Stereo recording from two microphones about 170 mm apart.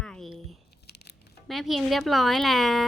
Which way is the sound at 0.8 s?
75° left (ahead or behind).